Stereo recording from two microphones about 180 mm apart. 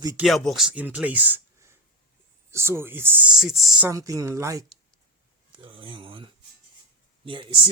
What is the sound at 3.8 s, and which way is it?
Speech, 20° right (ahead or behind).